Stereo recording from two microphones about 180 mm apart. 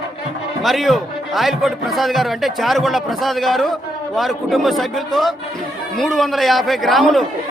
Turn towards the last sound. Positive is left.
turn(degrees=0)  # may be behind; listen again after turning